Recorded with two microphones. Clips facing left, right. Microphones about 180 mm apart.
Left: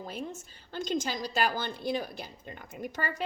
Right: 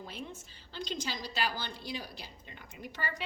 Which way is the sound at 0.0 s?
45° left (ahead or behind).